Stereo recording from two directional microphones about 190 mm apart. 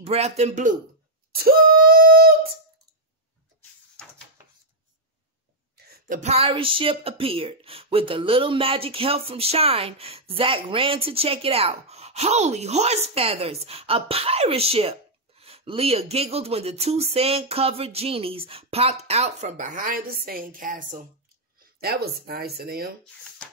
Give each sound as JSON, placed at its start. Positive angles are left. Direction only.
{"t": 0.0, "sound": "a woman's voice", "side_deg": -35}
{"t": 1.3, "sound": "a sound", "side_deg": -50}
{"t": 5.8, "sound": "a woman's voice", "side_deg": -55}